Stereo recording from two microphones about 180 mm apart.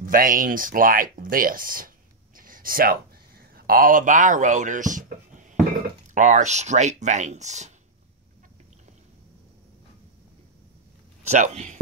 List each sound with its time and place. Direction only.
0.0 s speech: 50° right (ahead or behind)
2.3 s a sound: 50° right (ahead or behind)
6.1 s speech: 40° right (ahead or behind)
11.2 s speech: 40° right (ahead or behind)